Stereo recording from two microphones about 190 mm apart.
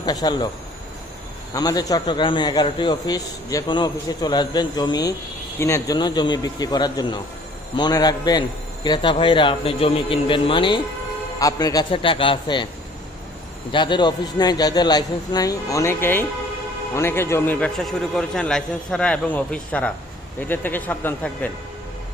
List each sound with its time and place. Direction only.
0.0 s a man's voice: 20° left (ahead or behind)
1.5 s a man's voice: 20° left (ahead or behind)
13.7 s a man's voice: 25° left (ahead or behind); by 21.5 s 10° left (ahead or behind)